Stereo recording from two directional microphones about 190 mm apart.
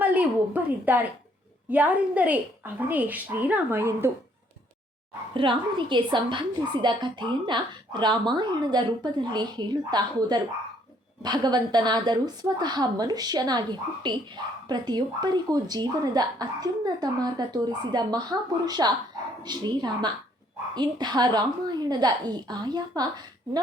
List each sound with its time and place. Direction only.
0.0 s a woman's voice: 10° right (ahead or behind)
5.3 s a woman's voice: 25° right (ahead or behind)